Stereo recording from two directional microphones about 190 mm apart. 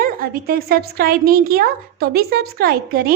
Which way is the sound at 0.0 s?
50° right (ahead or behind).